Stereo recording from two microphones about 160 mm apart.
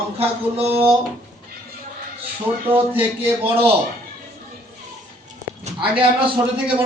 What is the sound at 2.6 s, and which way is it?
Speech, 10° right (ahead or behind).